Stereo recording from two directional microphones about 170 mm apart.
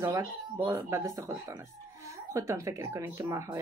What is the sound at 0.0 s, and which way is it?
Speech, 20° right (ahead or behind).